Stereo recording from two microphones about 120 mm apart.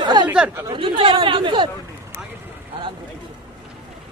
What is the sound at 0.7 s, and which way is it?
Speech, 45° right (ahead or behind).